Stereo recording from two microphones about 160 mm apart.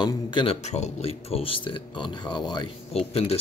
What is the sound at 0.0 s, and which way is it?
Speech, 30° left (ahead or behind).